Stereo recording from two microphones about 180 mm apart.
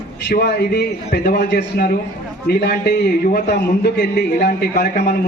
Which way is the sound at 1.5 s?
75° left (ahead or behind).